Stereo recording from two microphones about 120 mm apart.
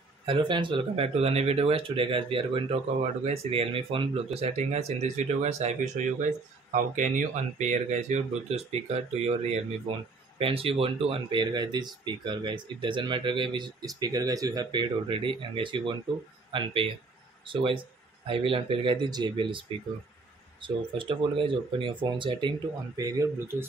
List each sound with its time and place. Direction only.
0.2 s speech: 45° right (ahead or behind); by 6.0 s 70° right (ahead or behind)
6.7 s speech: 90° right; by 19.6 s 45° right (ahead or behind)
20.6 s speech: 45° right (ahead or behind)
22.9 s speech: 30° right (ahead or behind)